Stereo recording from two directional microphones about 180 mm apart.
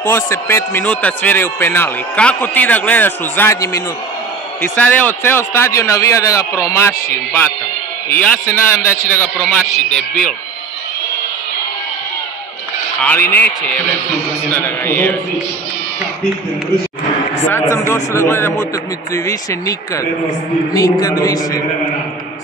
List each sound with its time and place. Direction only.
0.0 s a man's voice: 15° left (ahead or behind)
13.0 s a man's voice: 10° left (ahead or behind)
17.5 s a man's voice: 15° left (ahead or behind)
20.7 s speech: 20° left (ahead or behind)